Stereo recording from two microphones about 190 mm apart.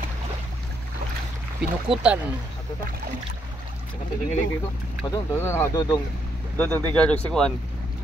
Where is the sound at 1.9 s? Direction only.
5° right (ahead or behind).